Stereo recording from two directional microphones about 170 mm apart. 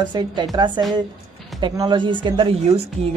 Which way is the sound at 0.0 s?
25° right (ahead or behind).